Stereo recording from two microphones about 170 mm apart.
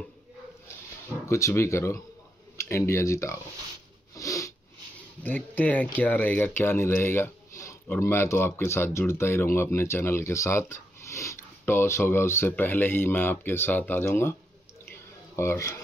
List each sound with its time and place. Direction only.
1.3 s speech: 15° left (ahead or behind)
4.1 s sniff: 20° left (ahead or behind)
5.2 s speech: 10° left (ahead or behind)
14.9 s a sound: 15° left (ahead or behind)